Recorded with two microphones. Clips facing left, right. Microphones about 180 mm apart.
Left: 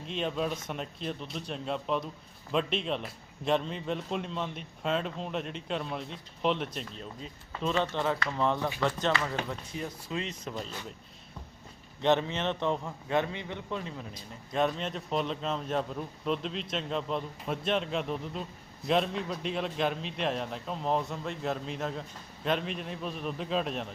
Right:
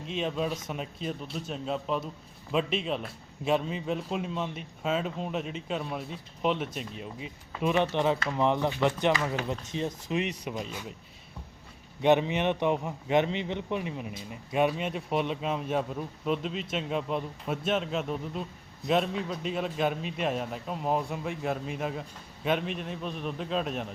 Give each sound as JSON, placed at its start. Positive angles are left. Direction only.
{"t": 0.1, "sound": "a man's voice", "side_deg": 0}
{"t": 12.0, "sound": "a man's voice", "side_deg": -15}
{"t": 14.5, "sound": "a man's voice", "side_deg": -10}